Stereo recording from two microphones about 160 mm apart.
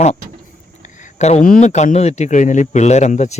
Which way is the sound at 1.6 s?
45° left (ahead or behind).